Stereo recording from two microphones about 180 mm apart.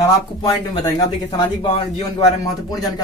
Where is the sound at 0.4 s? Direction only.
20° left (ahead or behind).